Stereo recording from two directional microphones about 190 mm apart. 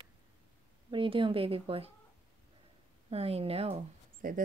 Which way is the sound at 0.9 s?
25° right (ahead or behind).